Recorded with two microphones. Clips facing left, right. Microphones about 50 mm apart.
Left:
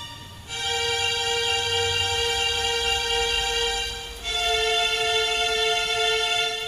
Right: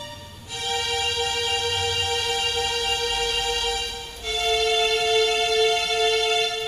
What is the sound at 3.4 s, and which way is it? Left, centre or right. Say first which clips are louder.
Music: even; left.